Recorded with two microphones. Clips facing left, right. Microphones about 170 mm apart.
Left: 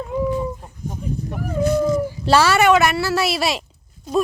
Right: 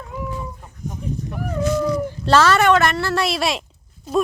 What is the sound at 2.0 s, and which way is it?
Speech, 10° left (ahead or behind).